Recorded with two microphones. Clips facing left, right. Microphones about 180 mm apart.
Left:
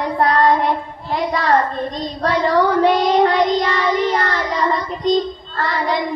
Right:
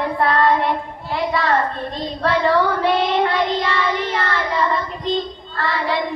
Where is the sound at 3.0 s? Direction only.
40° left (ahead or behind).